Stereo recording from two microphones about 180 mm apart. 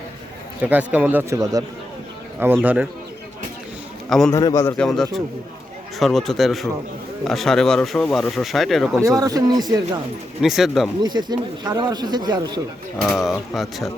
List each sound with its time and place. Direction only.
0.6 s speech: 10° right (ahead or behind)
4.3 s a man's voice: 20° left (ahead or behind)
4.8 s speech: centre (ahead or behind)
9.0 s speech: 20° right (ahead or behind)
10.4 s speech: centre (ahead or behind)
11.0 s speech: 25° right (ahead or behind)
13.0 s speech: centre (ahead or behind)